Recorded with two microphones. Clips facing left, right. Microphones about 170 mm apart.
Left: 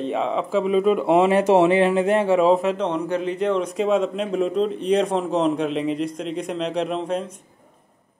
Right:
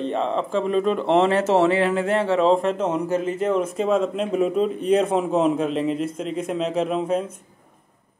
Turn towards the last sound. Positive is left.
turn(degrees=-5)  # may be behind; listen again after turning